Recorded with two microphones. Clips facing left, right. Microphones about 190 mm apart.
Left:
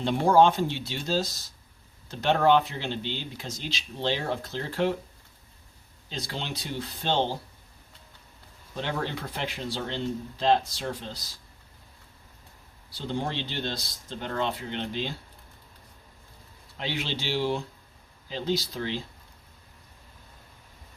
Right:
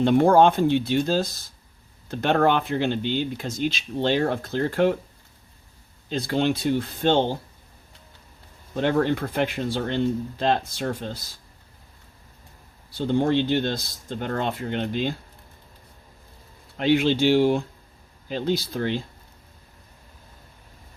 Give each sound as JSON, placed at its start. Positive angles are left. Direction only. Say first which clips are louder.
{"t": 0.0, "sound": "speech", "louder": "right 4 dB", "side_deg": -55}
{"t": 6.1, "sound": "speech", "louder": "right 12 dB", "side_deg": -55}
{"t": 8.7, "sound": "speech", "louder": "right 10 dB", "side_deg": -55}
{"t": 12.9, "sound": "speech", "louder": "right 10 dB", "side_deg": -55}
{"t": 16.7, "sound": "speech", "louder": "right 13 dB", "side_deg": -55}